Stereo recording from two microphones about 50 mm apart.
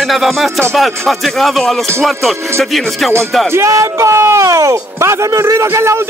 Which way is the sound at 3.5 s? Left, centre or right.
Right.